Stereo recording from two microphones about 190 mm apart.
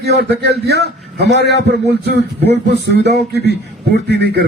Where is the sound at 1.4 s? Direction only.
60° left (ahead or behind).